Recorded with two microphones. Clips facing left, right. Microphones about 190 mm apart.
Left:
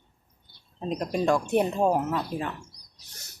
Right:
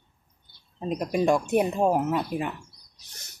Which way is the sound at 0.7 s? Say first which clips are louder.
Right 2 dB; 5° right (ahead or behind).